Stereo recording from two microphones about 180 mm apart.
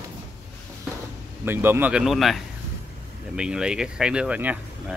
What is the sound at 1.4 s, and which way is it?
Speech, 10° right (ahead or behind).